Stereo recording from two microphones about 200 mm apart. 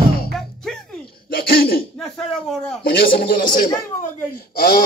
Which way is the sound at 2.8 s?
45° left (ahead or behind).